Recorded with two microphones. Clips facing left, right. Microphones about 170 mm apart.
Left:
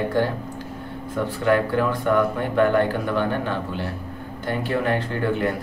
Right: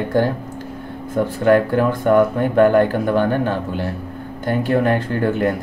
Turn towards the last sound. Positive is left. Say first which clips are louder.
# right 4 dB
turn(degrees=-50)  # may be behind; listen again after turning